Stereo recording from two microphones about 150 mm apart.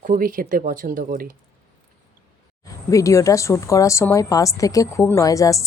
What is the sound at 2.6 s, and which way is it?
Speech, 20° left (ahead or behind).